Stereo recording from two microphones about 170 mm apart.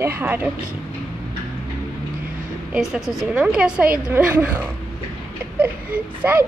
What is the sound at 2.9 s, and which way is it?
A woman's voice, 5° right (ahead or behind).